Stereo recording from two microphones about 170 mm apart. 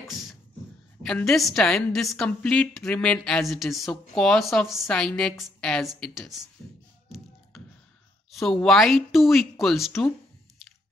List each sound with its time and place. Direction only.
1.0 s a woman's voice: centre (ahead or behind)
7.1 s beatboxing: centre (ahead or behind)
8.3 s a woman's voice: centre (ahead or behind)